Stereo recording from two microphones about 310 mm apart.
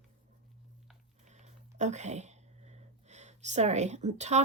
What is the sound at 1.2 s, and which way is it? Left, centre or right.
Speech, right.